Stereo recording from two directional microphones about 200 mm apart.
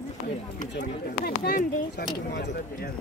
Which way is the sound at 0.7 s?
50° left (ahead or behind).